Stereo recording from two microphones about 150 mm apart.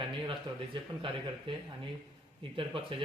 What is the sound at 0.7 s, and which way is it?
Speech, 35° right (ahead or behind).